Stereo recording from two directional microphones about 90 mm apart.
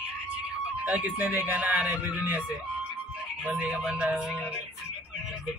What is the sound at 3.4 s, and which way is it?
Speech, 15° right (ahead or behind).